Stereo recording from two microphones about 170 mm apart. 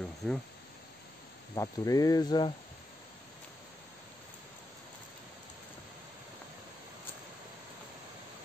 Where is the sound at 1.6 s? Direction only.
20° left (ahead or behind).